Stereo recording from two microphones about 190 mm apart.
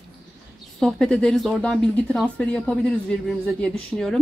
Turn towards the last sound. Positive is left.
turn(degrees=0)  # may be behind; listen again after turning